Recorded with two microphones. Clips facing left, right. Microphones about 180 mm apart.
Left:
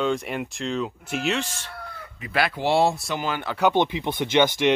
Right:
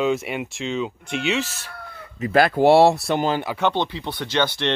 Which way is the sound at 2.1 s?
45° right (ahead or behind).